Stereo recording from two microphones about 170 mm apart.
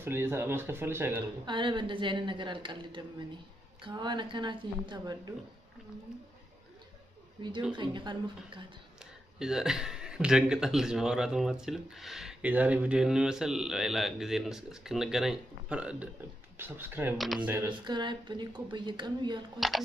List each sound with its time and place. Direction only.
0.0 s speech: 15° right (ahead or behind)
1.4 s a woman's voice: 30° right (ahead or behind)
7.7 s a woman's voice: 25° right (ahead or behind)
9.0 s speech: 5° right (ahead or behind)
17.6 s a woman's voice: 25° right (ahead or behind)